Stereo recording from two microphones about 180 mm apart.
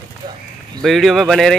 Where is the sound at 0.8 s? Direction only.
Centre (ahead or behind).